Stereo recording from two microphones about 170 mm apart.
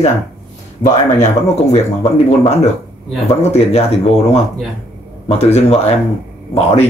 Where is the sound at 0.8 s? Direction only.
50° left (ahead or behind).